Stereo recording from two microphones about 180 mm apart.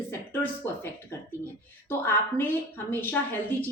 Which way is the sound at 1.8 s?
10° left (ahead or behind).